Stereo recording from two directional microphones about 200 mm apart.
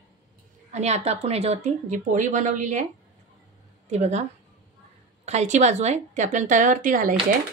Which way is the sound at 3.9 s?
35° right (ahead or behind).